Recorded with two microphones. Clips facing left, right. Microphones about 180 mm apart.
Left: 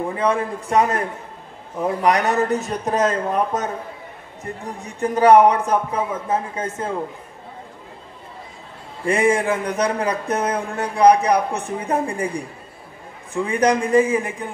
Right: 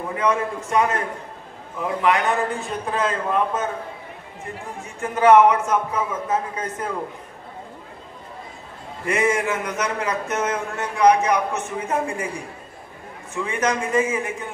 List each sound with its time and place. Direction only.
0.1 s a man's voice: 30° left (ahead or behind)
4.8 s a man's voice: 35° left (ahead or behind)
9.0 s a man's voice: 30° left (ahead or behind)